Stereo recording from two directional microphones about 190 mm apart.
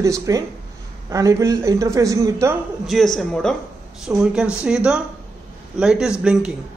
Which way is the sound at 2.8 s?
Centre (ahead or behind).